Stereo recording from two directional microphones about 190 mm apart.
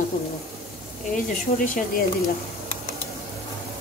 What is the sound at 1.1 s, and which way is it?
Speech, 45° left (ahead or behind).